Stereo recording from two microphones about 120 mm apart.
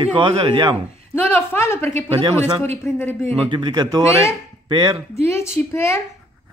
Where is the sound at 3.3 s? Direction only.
50° right (ahead or behind).